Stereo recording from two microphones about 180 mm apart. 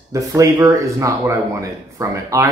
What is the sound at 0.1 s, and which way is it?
Speech, 15° right (ahead or behind).